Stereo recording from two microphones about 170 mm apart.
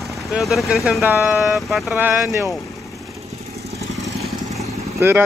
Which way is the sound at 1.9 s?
15° right (ahead or behind).